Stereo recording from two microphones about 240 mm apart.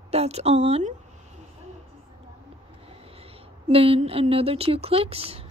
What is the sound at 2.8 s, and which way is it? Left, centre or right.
Speech, right.